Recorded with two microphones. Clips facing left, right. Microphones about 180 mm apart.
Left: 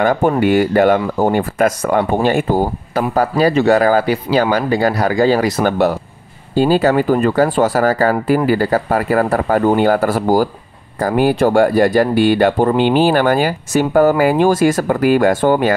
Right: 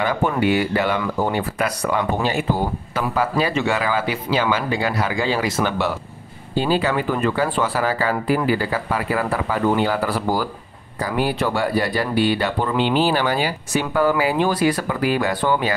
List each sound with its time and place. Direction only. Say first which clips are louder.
0.0 s speech: left 6 dB; 45° left (ahead or behind)